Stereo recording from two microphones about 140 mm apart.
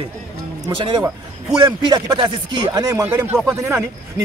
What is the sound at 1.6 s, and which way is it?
Speech, 30° right (ahead or behind).